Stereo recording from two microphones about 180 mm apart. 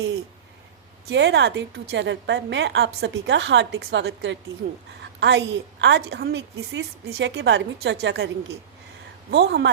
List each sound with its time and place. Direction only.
1.1 s a woman's voice: 75° right (ahead or behind)
9.3 s a woman's voice: 70° right (ahead or behind)